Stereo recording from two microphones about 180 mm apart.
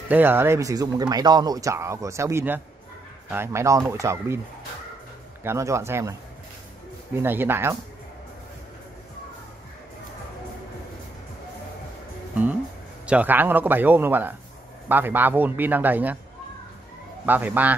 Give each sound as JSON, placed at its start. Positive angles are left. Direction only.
{"t": 0.1, "sound": "speech", "side_deg": -10}
{"t": 5.4, "sound": "speech", "side_deg": -15}
{"t": 7.2, "sound": "speech", "side_deg": -10}
{"t": 13.0, "sound": "speech", "side_deg": -10}
{"t": 17.3, "sound": "speech", "side_deg": -10}